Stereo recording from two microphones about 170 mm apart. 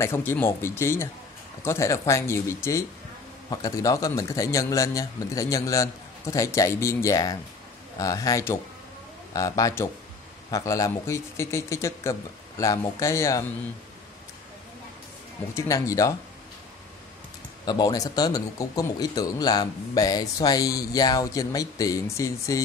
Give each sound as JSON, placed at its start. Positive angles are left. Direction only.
{"t": 0.0, "sound": "a man's voice", "side_deg": 15}
{"t": 15.5, "sound": "a man's voice", "side_deg": 20}
{"t": 17.6, "sound": "a man's voice", "side_deg": 25}